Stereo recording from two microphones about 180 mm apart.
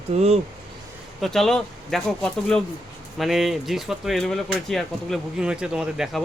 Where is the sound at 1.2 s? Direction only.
Centre (ahead or behind).